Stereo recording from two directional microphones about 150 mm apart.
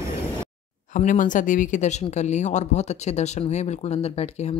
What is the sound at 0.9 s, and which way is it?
Speech, 60° left (ahead or behind).